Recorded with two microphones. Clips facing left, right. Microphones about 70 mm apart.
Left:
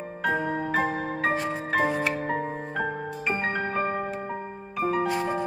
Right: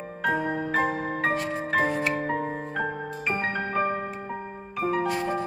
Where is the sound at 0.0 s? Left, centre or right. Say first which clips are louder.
Even; centre.